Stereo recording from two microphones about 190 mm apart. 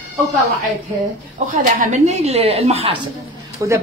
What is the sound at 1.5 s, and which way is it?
A woman's voice, 35° right (ahead or behind).